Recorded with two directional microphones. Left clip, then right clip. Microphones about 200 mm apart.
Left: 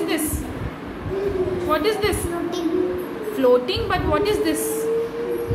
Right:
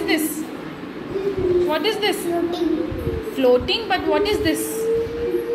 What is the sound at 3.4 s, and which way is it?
A woman's voice, 5° left (ahead or behind).